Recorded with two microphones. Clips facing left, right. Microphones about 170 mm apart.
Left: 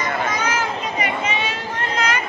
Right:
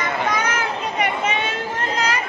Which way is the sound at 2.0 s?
35° right (ahead or behind).